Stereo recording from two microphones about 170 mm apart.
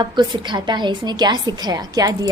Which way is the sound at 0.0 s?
25° right (ahead or behind).